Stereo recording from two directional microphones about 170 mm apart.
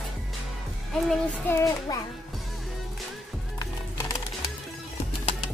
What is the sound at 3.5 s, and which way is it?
Music, 20° left (ahead or behind).